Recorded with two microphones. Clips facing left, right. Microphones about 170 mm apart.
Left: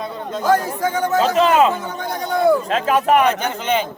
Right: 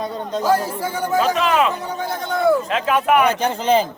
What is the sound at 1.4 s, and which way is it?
Speech, 25° left (ahead or behind).